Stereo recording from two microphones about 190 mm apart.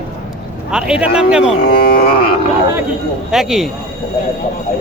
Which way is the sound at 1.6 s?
50° left (ahead or behind).